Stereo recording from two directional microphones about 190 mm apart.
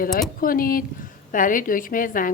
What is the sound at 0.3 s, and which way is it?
A woman's voice, 50° left (ahead or behind).